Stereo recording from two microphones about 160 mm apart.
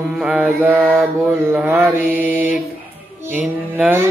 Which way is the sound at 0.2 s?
5° right (ahead or behind).